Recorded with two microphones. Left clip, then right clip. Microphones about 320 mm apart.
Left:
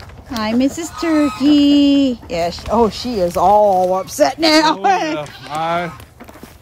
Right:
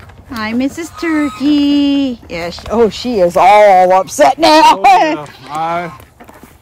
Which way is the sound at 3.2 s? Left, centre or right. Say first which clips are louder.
Right 6 dB; right.